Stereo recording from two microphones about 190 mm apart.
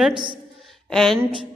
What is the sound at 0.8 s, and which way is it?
Speech, centre (ahead or behind).